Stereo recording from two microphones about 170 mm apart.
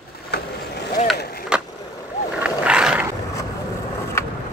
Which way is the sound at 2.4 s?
5° right (ahead or behind).